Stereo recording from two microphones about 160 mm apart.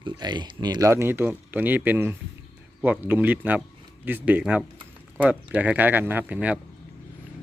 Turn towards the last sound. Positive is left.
turn(degrees=-10)  # may be behind; listen again after turning